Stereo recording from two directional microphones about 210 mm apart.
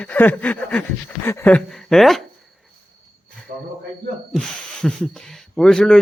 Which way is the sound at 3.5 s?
40° right (ahead or behind).